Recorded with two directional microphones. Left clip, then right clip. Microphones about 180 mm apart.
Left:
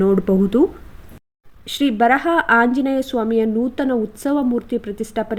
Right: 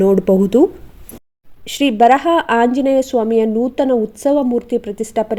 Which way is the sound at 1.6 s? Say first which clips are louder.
Right 5 dB; 15° right (ahead or behind).